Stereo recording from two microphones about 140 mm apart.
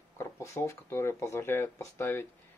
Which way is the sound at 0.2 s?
20° left (ahead or behind).